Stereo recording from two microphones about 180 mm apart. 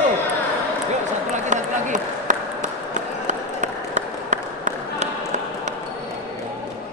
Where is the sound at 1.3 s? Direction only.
45° right (ahead or behind).